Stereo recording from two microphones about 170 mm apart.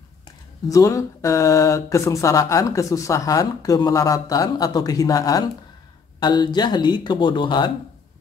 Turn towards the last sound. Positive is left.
turn(degrees=25)  # may be behind; listen again after turning